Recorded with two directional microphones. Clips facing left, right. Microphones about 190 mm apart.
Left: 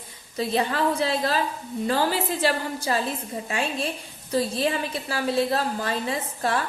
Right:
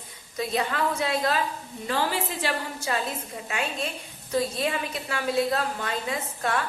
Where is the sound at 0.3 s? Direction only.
30° left (ahead or behind).